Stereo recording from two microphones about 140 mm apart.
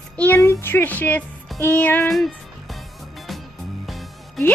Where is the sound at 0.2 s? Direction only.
15° left (ahead or behind).